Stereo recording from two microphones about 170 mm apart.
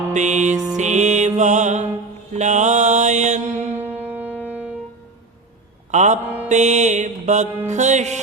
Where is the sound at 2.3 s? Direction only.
45° right (ahead or behind).